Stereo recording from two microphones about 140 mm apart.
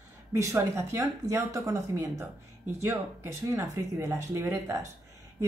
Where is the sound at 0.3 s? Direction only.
20° right (ahead or behind).